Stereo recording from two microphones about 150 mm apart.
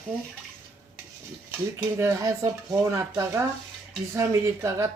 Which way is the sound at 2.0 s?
20° right (ahead or behind).